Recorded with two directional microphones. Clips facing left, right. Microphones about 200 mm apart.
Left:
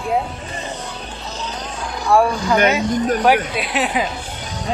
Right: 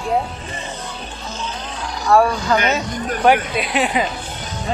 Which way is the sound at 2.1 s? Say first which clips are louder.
Right 1 dB; 10° left (ahead or behind).